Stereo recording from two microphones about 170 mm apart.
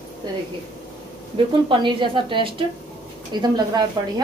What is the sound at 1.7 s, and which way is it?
A woman's voice, 30° right (ahead or behind).